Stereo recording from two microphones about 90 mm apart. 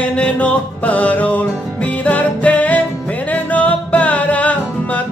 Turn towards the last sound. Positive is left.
turn(degrees=15)  # may be behind; listen again after turning